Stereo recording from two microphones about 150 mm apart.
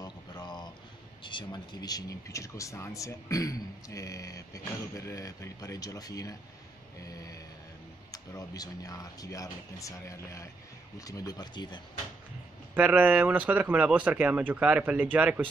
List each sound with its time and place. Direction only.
0.0 s a sound: 30° left (ahead or behind)
1.2 s speech: 30° left (ahead or behind)
7.1 s mantra: 25° left (ahead or behind)
8.1 s speech: 25° left (ahead or behind)
12.7 s speech: 10° right (ahead or behind)